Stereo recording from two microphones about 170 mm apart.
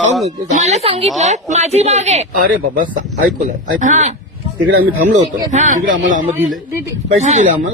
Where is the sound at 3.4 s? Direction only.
45° right (ahead or behind).